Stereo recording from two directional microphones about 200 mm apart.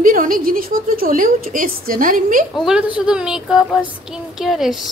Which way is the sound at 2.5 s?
5° right (ahead or behind).